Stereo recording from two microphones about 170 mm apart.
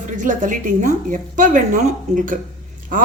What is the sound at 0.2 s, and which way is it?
Speech, 50° right (ahead or behind).